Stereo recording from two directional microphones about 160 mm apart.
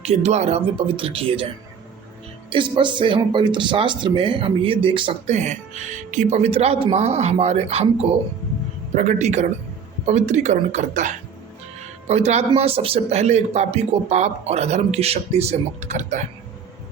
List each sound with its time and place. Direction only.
0.0 s speech: 40° right (ahead or behind)
2.5 s speech: 30° right (ahead or behind)
5.3 s speech: 45° right (ahead or behind)